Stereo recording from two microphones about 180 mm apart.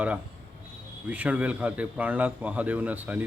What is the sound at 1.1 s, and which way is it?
A man's voice, 10° right (ahead or behind).